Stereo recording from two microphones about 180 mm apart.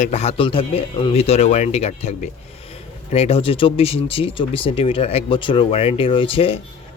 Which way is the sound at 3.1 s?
35° left (ahead or behind).